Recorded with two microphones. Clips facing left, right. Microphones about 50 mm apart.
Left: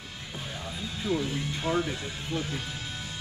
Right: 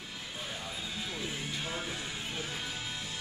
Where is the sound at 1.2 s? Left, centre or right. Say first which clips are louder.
Left 6 dB; centre.